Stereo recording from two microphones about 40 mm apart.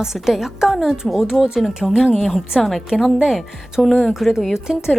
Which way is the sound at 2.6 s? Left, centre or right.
Centre.